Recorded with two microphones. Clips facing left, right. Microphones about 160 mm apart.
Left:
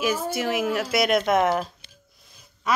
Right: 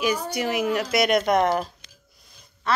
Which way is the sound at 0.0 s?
Centre (ahead or behind).